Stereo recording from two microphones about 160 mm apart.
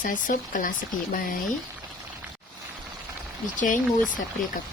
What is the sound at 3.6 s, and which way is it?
Speech, 55° left (ahead or behind).